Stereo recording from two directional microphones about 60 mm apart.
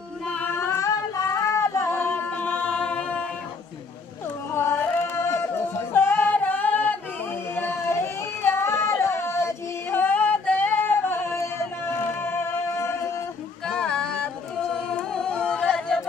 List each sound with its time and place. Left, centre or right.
0.5 s singing: left
0.7 s child singing: left
2.4 s music: left
5.1 s music: left
5.9 s singing: left
7.5 s a sound: left
9.8 s singing: left
12.2 s music: left
13.7 s a sound: centre
15.0 s singing: centre